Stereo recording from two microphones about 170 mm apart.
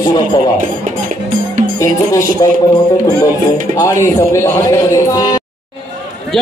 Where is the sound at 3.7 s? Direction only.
20° left (ahead or behind).